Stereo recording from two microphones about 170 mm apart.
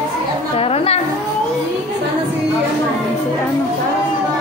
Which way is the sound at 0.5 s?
35° left (ahead or behind).